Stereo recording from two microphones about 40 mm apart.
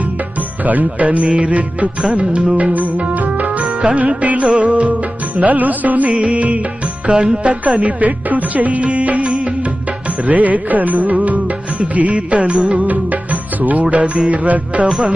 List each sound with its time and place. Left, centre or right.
0.6 s music: right
3.8 s music: right
5.4 s music: right
6.1 s music: right
7.8 s music: right
13.8 s music: right